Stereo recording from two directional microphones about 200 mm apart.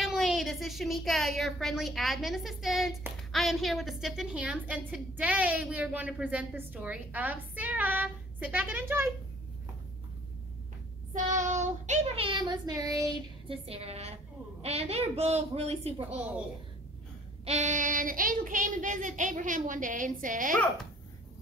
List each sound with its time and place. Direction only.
0.0 s a woman's voice: centre (ahead or behind)
11.2 s child singing: 35° right (ahead or behind)
17.5 s child singing: 35° right (ahead or behind)